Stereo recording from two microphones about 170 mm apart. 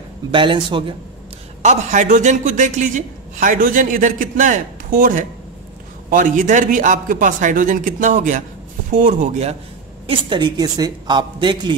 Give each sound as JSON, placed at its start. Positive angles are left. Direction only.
{"t": 0.3, "sound": "a woman's voice", "side_deg": -30}
{"t": 1.6, "sound": "a woman's voice", "side_deg": -45}
{"t": 10.0, "sound": "a woman's voice", "side_deg": -30}